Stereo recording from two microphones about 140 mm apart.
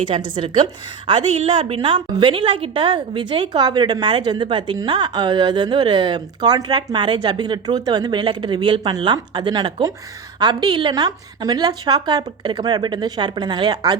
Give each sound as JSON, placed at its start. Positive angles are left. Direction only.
{"t": 0.3, "sound": "a woman's voice", "side_deg": -35}
{"t": 1.2, "sound": "a woman's voice", "side_deg": -55}
{"t": 1.5, "sound": "a woman's voice", "side_deg": -35}